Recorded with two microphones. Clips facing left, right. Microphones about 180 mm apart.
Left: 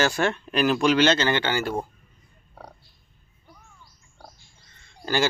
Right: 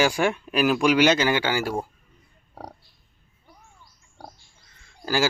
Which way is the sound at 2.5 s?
40° right (ahead or behind).